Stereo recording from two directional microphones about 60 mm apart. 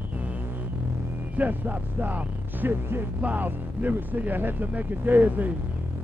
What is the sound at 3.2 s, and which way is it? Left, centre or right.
Speech, right.